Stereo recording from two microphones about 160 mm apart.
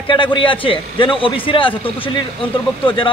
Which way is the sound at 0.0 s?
30° left (ahead or behind).